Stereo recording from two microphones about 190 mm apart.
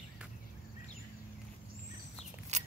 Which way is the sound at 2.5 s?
35° right (ahead or behind).